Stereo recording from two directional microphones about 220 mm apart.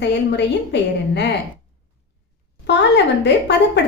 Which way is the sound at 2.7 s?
55° left (ahead or behind).